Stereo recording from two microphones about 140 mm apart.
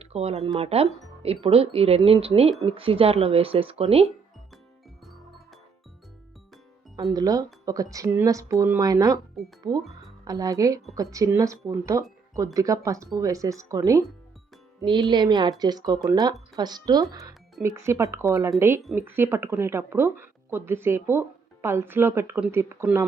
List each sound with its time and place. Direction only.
0.0 s speech: 45° right (ahead or behind)
6.9 s speech: 25° right (ahead or behind)
8.8 s speech: 25° right (ahead or behind)
10.2 s speech: 25° right (ahead or behind)
15.1 s speech: 30° right (ahead or behind)